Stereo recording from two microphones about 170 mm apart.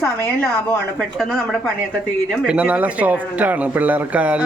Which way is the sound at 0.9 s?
Centre (ahead or behind).